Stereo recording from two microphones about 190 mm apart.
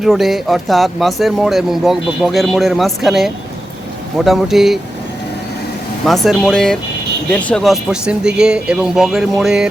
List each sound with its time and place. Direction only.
0.0 s speech: centre (ahead or behind)
6.1 s speech: centre (ahead or behind)